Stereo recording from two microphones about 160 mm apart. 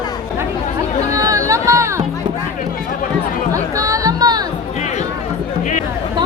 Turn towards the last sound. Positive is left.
turn(degrees=-25)  # may be behind; listen again after turning